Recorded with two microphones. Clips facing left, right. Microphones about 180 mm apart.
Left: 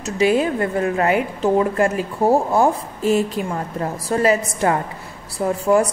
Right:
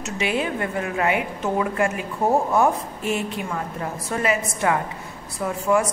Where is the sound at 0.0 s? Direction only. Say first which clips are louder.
Left 7 dB; 40° left (ahead or behind).